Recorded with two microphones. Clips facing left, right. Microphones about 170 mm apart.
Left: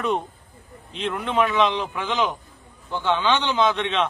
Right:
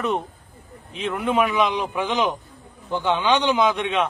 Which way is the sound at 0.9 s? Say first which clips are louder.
Right 2 dB; 5° right (ahead or behind).